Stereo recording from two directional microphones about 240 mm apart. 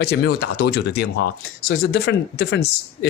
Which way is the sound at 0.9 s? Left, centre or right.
Left.